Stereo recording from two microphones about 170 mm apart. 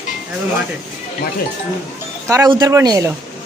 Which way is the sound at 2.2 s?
15° right (ahead or behind).